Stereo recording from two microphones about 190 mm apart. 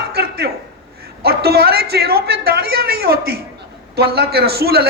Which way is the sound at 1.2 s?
55° right (ahead or behind).